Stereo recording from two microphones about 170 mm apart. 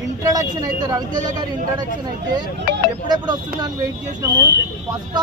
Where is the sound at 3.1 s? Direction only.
25° right (ahead or behind).